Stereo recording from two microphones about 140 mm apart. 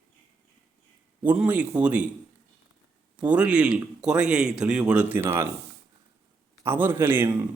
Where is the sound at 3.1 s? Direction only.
10° right (ahead or behind).